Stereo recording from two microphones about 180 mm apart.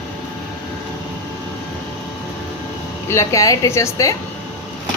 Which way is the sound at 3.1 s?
15° left (ahead or behind).